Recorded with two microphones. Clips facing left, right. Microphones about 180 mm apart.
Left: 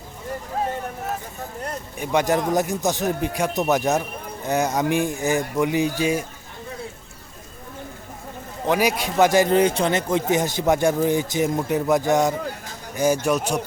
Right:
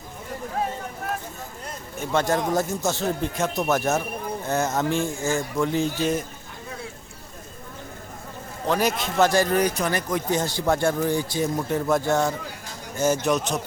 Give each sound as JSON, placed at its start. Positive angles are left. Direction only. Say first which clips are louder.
{"t": 2.0, "sound": "speech", "louder": "left 2 dB", "side_deg": 15}
{"t": 8.6, "sound": "speech", "louder": "left 2 dB", "side_deg": 15}